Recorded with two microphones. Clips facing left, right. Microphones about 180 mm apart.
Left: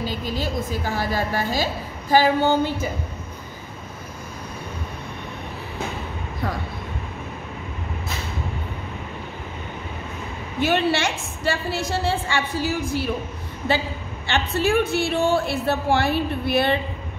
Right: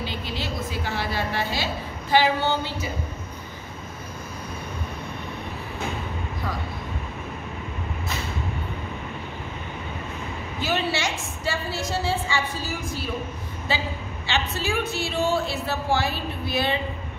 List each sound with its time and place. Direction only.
0.0 s a woman's voice: 45° left (ahead or behind)
10.6 s a woman's voice: 60° left (ahead or behind)
14.2 s a woman's voice: 55° left (ahead or behind)